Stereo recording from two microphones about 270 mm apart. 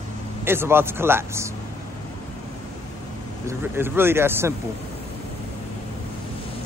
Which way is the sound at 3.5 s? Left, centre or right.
Centre.